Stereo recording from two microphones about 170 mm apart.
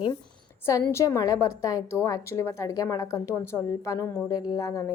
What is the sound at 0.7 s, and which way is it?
A woman's voice, 15° left (ahead or behind).